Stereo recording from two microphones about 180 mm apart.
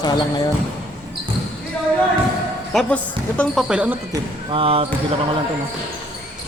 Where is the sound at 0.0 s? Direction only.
25° left (ahead or behind).